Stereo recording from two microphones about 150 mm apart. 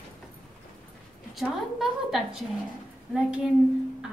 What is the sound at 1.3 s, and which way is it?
Speech, centre (ahead or behind).